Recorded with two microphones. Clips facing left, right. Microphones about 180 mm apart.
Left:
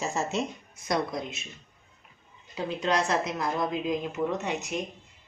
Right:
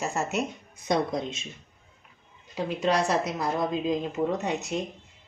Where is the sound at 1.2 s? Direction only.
30° right (ahead or behind).